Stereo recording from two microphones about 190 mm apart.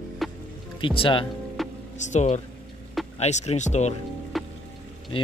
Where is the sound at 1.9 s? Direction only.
40° left (ahead or behind).